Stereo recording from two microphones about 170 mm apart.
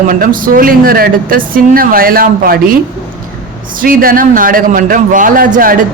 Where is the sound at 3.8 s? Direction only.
55° right (ahead or behind).